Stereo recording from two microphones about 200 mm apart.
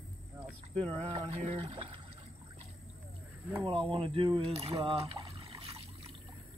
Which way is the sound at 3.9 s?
25° right (ahead or behind).